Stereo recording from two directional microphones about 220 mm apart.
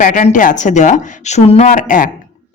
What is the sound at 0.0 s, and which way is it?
A woman's voice, 35° left (ahead or behind).